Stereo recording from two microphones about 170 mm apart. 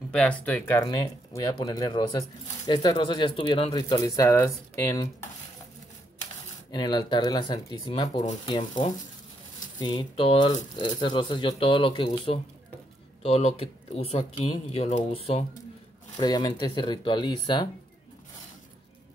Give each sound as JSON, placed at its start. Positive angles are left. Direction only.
{"t": 0.1, "sound": "speech", "side_deg": 5}
{"t": 0.8, "sound": "speech", "side_deg": 20}
{"t": 6.7, "sound": "speech", "side_deg": 25}
{"t": 16.2, "sound": "speech", "side_deg": 25}